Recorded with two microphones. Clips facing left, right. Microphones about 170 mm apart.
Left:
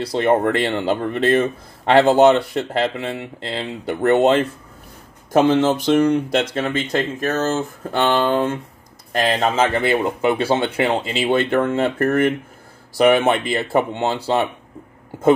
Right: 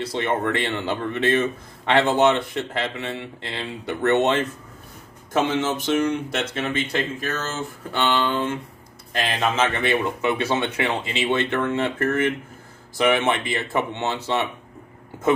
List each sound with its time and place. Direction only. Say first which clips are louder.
0.0 s speech: left 7 dB; 35° left (ahead or behind)
5.6 s speech: left 6 dB; 35° left (ahead or behind)